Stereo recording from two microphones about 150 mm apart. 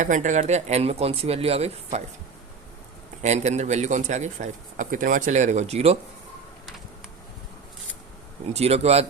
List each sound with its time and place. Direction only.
0.0 s a man's voice: 55° right (ahead or behind)
3.2 s a man's voice: 50° right (ahead or behind)
8.5 s a man's voice: 45° right (ahead or behind)